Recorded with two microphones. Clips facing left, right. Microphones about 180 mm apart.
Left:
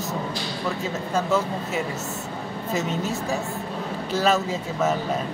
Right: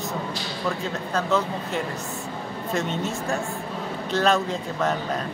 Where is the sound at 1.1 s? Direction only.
10° left (ahead or behind).